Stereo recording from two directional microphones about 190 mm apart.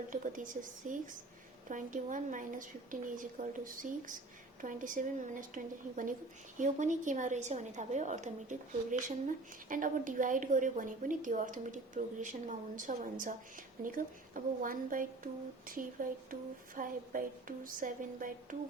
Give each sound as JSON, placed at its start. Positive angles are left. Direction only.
{"t": 0.1, "sound": "a woman's voice", "side_deg": -45}